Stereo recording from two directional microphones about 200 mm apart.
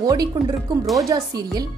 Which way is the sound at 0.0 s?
20° right (ahead or behind).